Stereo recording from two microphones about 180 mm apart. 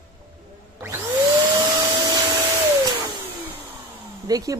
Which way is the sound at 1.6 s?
20° right (ahead or behind).